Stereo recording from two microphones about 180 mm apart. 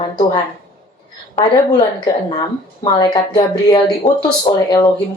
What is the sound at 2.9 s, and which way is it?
Speech, 25° left (ahead or behind).